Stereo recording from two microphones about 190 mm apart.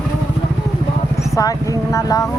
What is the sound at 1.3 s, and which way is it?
Speech, 15° left (ahead or behind).